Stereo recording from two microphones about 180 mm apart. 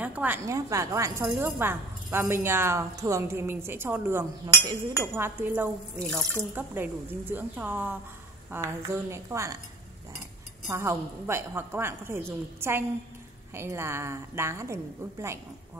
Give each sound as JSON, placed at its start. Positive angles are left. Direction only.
{"t": 0.0, "sound": "a woman's voice", "side_deg": -10}
{"t": 5.9, "sound": "speech", "side_deg": 5}
{"t": 6.5, "sound": "a woman's voice", "side_deg": -10}
{"t": 10.7, "sound": "a woman's voice", "side_deg": -15}